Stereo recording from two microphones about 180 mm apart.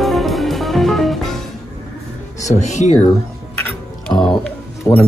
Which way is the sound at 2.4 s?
40° left (ahead or behind).